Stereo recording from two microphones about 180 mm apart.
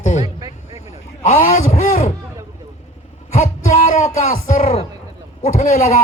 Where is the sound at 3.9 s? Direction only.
45° left (ahead or behind).